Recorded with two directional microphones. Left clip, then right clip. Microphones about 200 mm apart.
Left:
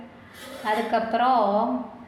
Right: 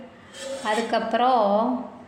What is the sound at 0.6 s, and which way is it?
Speech, 25° right (ahead or behind).